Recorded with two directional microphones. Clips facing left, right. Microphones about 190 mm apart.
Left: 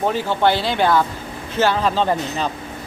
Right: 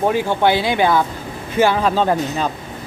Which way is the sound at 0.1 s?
15° right (ahead or behind).